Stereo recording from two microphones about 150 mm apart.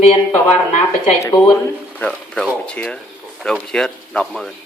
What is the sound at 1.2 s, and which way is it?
Speech, 25° left (ahead or behind).